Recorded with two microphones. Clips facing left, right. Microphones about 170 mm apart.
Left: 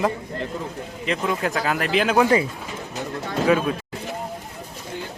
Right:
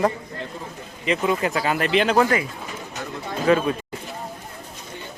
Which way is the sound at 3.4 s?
5° left (ahead or behind).